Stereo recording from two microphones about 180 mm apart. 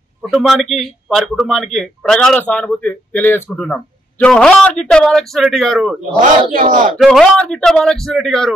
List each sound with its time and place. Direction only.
0.2 s a man's voice: centre (ahead or behind)
6.5 s speech: 45° right (ahead or behind)
7.0 s a man's voice: centre (ahead or behind)